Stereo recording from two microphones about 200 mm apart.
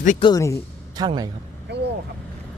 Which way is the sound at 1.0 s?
20° right (ahead or behind).